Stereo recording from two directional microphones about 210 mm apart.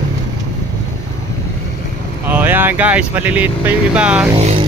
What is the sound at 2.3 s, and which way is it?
Speech, 10° right (ahead or behind).